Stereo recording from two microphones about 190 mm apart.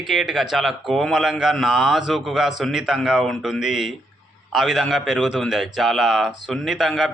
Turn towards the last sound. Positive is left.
turn(degrees=0)  # may be behind; listen again after turning